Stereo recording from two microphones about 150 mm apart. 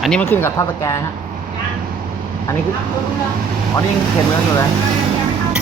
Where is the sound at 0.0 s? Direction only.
5° left (ahead or behind).